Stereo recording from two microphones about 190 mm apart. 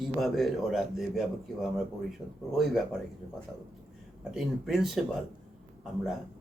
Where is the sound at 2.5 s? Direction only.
Centre (ahead or behind).